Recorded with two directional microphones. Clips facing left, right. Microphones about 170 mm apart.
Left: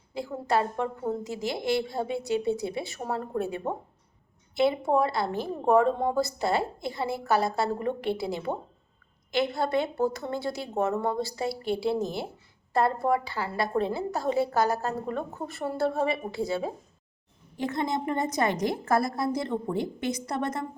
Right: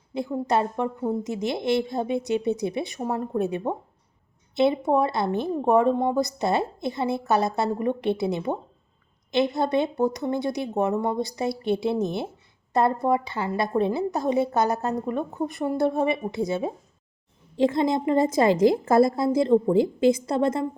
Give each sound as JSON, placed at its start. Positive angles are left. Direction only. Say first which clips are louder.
{"t": 0.1, "sound": "a woman's voice", "louder": "right 3 dB", "side_deg": -20}